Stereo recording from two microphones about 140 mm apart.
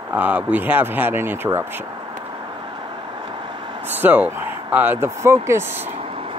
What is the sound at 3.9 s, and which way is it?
Speech, 15° right (ahead or behind).